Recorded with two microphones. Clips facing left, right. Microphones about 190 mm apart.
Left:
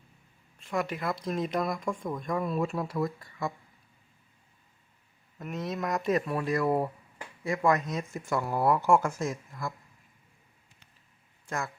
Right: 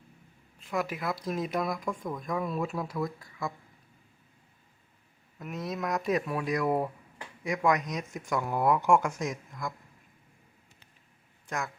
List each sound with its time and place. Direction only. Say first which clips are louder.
0.6 s speech: left 1 dB; centre (ahead or behind)
5.4 s speech: left 1 dB; centre (ahead or behind)
11.4 s speech: left 1 dB; centre (ahead or behind)